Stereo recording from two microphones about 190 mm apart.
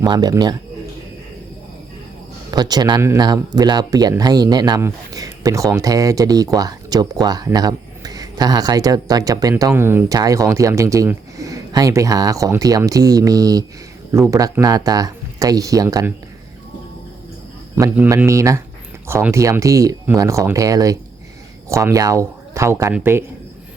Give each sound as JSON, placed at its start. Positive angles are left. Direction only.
{"t": 0.0, "sound": "speech", "side_deg": -20}
{"t": 2.5, "sound": "speech", "side_deg": -20}
{"t": 17.7, "sound": "speech", "side_deg": -15}